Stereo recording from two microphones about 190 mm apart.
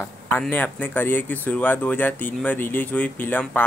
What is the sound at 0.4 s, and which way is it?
Speech, 10° left (ahead or behind).